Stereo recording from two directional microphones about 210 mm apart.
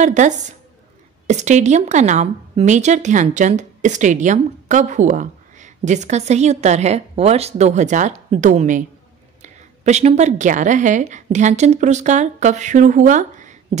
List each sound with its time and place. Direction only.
0.0 s a woman's voice: 35° right (ahead or behind)